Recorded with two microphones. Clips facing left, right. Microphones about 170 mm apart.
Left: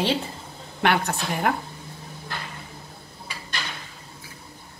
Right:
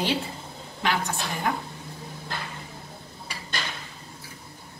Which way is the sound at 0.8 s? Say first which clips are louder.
Left 4 dB; 65° left (ahead or behind).